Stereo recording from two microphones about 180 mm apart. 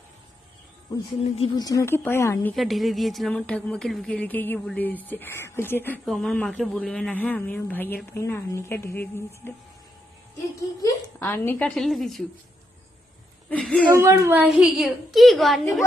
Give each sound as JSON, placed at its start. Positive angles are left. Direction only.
{"t": 1.2, "sound": "speech", "side_deg": 30}
{"t": 1.6, "sound": "a woman's voice", "side_deg": 15}
{"t": 10.8, "sound": "a woman's voice", "side_deg": 15}
{"t": 13.5, "sound": "a woman's voice", "side_deg": 5}
{"t": 13.8, "sound": "a woman's voice", "side_deg": -15}